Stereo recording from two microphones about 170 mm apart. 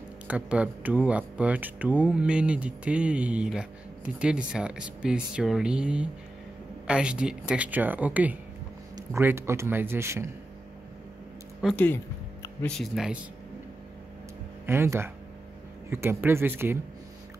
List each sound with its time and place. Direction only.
0.3 s speech: 10° right (ahead or behind)
11.7 s speech: 10° left (ahead or behind)
14.7 s speech: 15° right (ahead or behind)